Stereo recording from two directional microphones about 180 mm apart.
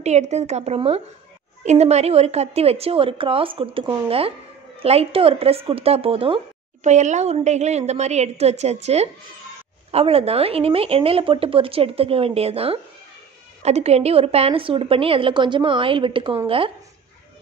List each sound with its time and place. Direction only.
0.0 s speech: 40° right (ahead or behind)